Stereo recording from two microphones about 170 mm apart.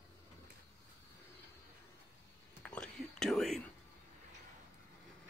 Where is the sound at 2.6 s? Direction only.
5° left (ahead or behind).